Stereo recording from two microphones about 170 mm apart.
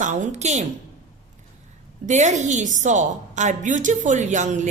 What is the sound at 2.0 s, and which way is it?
A woman's voice, 45° right (ahead or behind).